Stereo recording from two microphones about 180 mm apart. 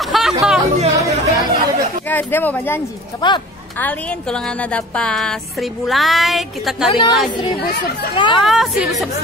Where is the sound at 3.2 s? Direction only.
25° left (ahead or behind).